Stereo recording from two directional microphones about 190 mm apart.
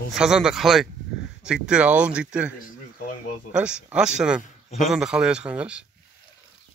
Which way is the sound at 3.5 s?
5° right (ahead or behind).